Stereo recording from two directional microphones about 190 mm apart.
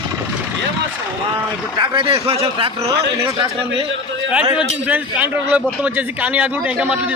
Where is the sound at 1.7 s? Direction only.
25° right (ahead or behind).